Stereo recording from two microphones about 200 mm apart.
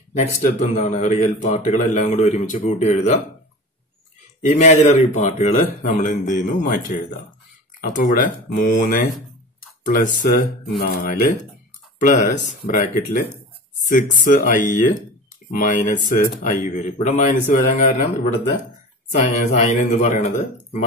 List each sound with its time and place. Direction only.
0.2 s speech: 35° left (ahead or behind)
4.5 s speech: 35° left (ahead or behind)
12.4 s speech: 40° left (ahead or behind)